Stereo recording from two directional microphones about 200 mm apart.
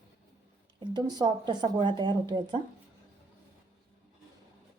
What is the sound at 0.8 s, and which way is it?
Speech, 20° right (ahead or behind).